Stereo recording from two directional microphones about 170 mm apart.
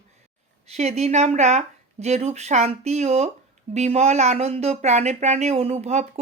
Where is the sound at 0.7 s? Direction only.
40° right (ahead or behind).